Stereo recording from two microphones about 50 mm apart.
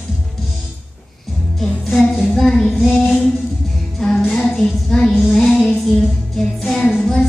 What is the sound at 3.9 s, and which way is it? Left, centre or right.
Music, centre.